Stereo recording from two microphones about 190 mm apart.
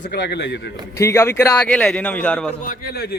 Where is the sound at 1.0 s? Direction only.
15° left (ahead or behind).